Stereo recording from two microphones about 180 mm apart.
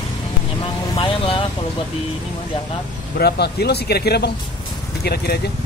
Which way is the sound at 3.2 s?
65° left (ahead or behind).